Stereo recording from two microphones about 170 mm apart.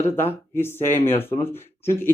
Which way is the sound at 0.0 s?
15° left (ahead or behind).